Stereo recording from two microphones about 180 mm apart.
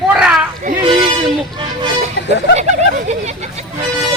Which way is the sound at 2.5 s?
40° right (ahead or behind).